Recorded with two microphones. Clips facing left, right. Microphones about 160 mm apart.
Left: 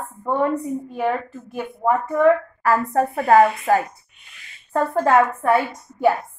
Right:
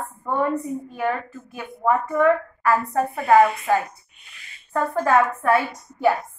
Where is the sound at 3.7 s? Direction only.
35° left (ahead or behind).